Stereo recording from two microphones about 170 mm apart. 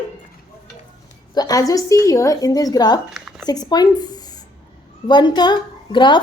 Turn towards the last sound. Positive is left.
turn(degrees=25)  # may be behind; listen again after turning